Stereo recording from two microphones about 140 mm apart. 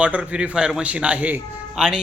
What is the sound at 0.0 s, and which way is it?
A man's voice, 10° right (ahead or behind).